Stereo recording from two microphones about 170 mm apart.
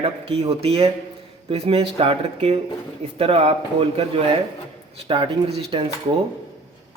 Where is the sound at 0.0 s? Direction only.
35° right (ahead or behind).